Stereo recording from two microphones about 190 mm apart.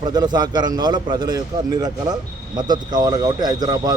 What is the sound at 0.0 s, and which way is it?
A man's voice, 20° right (ahead or behind).